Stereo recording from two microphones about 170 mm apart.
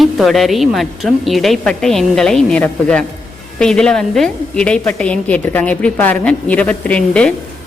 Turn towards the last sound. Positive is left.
turn(degrees=5)  # may be behind; listen again after turning